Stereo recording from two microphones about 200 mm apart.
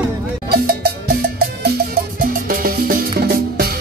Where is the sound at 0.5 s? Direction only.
50° right (ahead or behind).